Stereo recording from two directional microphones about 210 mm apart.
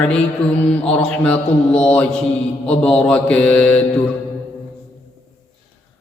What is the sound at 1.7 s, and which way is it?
Mantra, 30° left (ahead or behind).